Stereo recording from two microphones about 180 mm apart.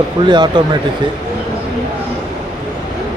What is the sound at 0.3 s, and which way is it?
Speech, 25° right (ahead or behind).